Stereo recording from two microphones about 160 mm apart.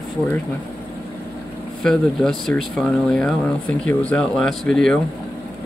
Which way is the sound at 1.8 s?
5° left (ahead or behind).